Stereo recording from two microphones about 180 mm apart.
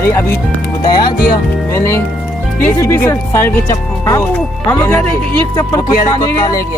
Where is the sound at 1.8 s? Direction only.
15° left (ahead or behind).